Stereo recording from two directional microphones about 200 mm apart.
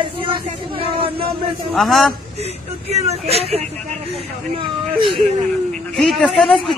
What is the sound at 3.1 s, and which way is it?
Speech, 30° right (ahead or behind).